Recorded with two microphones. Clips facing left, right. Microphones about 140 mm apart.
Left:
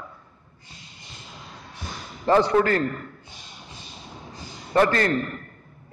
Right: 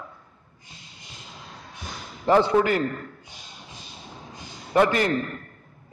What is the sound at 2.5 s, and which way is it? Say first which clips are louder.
Speech: even; 15° right (ahead or behind).